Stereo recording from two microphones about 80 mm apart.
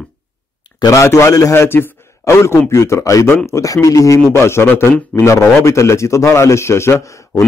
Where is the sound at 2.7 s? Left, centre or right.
Left.